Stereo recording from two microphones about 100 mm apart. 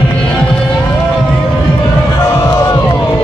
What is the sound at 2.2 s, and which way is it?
Crowd, 25° left (ahead or behind).